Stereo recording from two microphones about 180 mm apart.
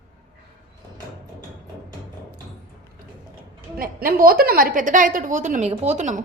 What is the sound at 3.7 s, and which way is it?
A woman's voice, 50° right (ahead or behind).